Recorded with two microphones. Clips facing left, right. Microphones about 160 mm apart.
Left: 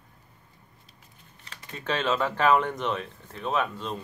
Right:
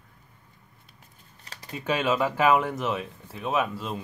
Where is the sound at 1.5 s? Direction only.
35° right (ahead or behind).